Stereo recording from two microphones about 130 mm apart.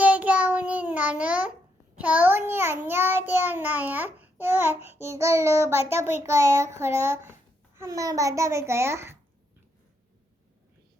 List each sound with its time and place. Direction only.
0.0 s child singing: 10° right (ahead or behind)
7.8 s a child's voice: 25° right (ahead or behind)